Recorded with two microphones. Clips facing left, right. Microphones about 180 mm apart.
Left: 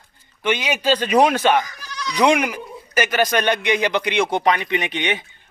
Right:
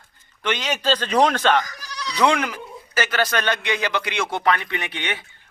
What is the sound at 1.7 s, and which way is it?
Bleat, 40° right (ahead or behind).